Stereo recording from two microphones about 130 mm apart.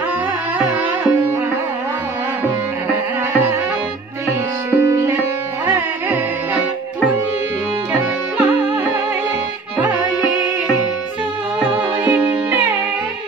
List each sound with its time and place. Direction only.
2.4 s tabla: 15° right (ahead or behind)
4.6 s music: 20° right (ahead or behind)
9.8 s music: 10° right (ahead or behind)
11.6 s music: 15° right (ahead or behind)